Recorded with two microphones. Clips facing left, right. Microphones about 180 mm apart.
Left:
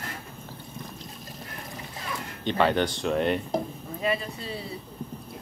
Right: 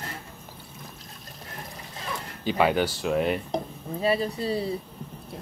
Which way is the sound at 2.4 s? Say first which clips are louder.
Right 1 dB; 5° right (ahead or behind).